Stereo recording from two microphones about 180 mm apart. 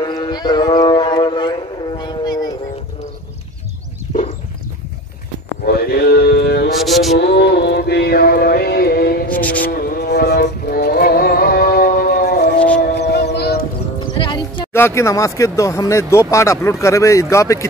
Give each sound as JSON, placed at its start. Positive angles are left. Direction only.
{"t": 0.0, "sound": "howl", "side_deg": 25}
{"t": 5.7, "sound": "mantra", "side_deg": 60}
{"t": 6.7, "sound": "music", "side_deg": 0}
{"t": 7.2, "sound": "music", "side_deg": 65}
{"t": 9.3, "sound": "music", "side_deg": 10}
{"t": 9.7, "sound": "music", "side_deg": 60}
{"t": 12.5, "sound": "a sound", "side_deg": 5}
{"t": 12.9, "sound": "music", "side_deg": 65}
{"t": 14.0, "sound": "music", "side_deg": 25}
{"t": 14.7, "sound": "speech", "side_deg": 15}